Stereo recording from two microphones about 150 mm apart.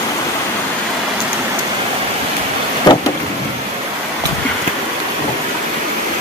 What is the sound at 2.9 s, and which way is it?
Vehicle, 30° left (ahead or behind).